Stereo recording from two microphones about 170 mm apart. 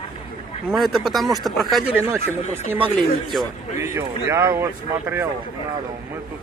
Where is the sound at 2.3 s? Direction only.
15° right (ahead or behind).